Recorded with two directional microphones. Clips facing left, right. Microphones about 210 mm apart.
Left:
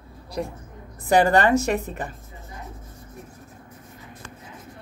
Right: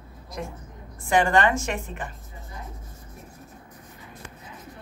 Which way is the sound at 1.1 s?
35° left (ahead or behind).